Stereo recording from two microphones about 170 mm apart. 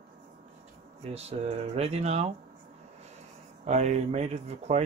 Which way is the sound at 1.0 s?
40° right (ahead or behind).